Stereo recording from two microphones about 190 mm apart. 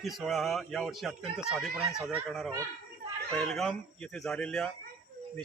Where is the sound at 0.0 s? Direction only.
Centre (ahead or behind).